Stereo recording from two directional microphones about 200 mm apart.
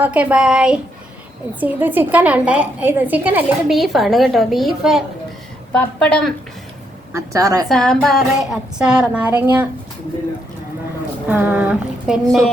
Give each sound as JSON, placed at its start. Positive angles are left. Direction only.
{"t": 0.0, "sound": "a woman's voice", "side_deg": -5}
{"t": 7.1, "sound": "a woman's voice", "side_deg": -15}
{"t": 7.7, "sound": "speech", "side_deg": 5}
{"t": 11.3, "sound": "a woman's voice", "side_deg": -10}